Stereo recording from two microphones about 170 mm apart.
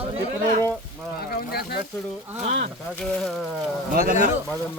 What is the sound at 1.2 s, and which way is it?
Speech, 60° left (ahead or behind).